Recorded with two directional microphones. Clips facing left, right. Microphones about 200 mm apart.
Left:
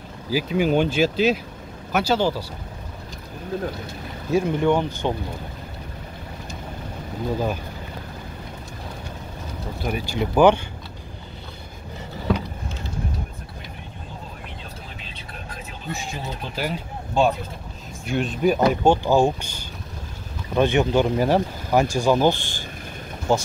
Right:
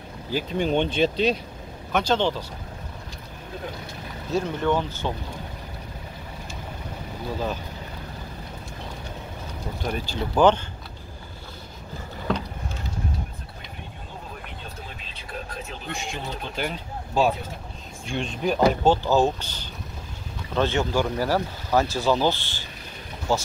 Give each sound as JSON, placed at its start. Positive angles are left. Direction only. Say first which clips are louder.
{"t": 0.3, "sound": "speech", "louder": "left 4 dB", "side_deg": 5}
{"t": 4.3, "sound": "speech", "louder": "left 4 dB", "side_deg": 10}
{"t": 9.8, "sound": "speech", "louder": "left 4 dB", "side_deg": 10}
{"t": 12.3, "sound": "vehicle", "louder": "left 3 dB", "side_deg": 5}
{"t": 15.9, "sound": "speech", "louder": "left 2 dB", "side_deg": 5}